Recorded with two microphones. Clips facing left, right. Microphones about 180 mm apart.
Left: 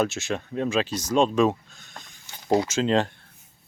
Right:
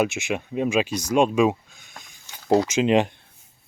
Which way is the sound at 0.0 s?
15° right (ahead or behind).